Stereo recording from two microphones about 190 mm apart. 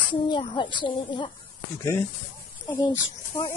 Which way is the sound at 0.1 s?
25° left (ahead or behind).